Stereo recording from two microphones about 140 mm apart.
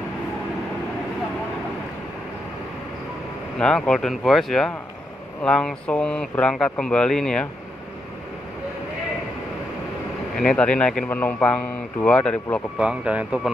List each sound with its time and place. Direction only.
3.5 s speech: 5° left (ahead or behind)
10.3 s a man's voice: 5° left (ahead or behind)
12.7 s speech: 10° right (ahead or behind)